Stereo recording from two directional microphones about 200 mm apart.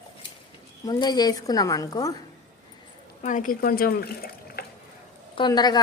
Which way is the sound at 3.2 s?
40° left (ahead or behind).